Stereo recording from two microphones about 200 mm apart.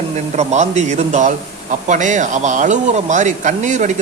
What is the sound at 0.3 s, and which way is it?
Speech, 35° right (ahead or behind).